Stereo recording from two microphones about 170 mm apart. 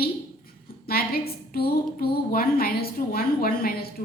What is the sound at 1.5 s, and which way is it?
A woman's voice, 65° left (ahead or behind).